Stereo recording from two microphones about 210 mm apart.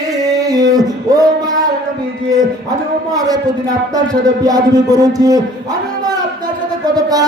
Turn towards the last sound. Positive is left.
turn(degrees=-15)  # may be behind; listen again after turning